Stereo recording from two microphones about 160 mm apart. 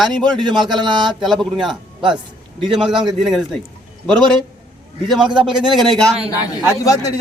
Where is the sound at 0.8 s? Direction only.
30° right (ahead or behind).